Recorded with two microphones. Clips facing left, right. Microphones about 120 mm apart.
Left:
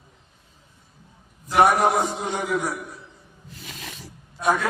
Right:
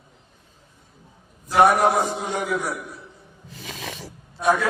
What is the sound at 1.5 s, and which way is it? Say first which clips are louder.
A man's voice: right 1 dB; centre (ahead or behind).